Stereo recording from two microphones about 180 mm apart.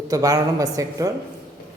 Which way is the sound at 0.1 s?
20° right (ahead or behind).